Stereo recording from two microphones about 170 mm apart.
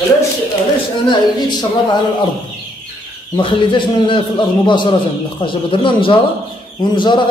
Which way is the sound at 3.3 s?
30° left (ahead or behind).